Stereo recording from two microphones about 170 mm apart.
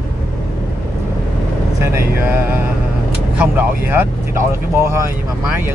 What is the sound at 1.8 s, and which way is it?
Speech, 10° right (ahead or behind).